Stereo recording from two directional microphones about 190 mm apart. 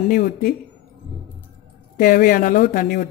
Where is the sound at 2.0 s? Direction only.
50° left (ahead or behind).